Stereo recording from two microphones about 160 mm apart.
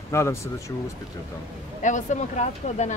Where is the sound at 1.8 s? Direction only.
50° left (ahead or behind).